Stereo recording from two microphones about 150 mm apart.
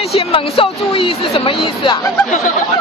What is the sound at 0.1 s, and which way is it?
Speech, 40° left (ahead or behind).